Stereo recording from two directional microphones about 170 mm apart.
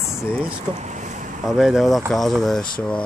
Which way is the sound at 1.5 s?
Centre (ahead or behind).